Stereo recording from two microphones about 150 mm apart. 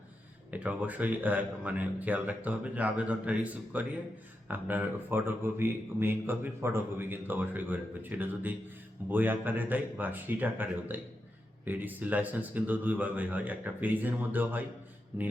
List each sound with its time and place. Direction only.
0.5 s a man's voice: 10° right (ahead or behind)